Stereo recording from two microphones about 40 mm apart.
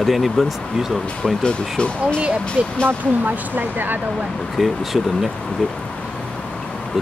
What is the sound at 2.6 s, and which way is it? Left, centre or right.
Speech, right.